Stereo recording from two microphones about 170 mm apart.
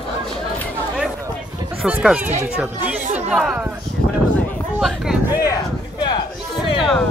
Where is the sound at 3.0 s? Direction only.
40° right (ahead or behind).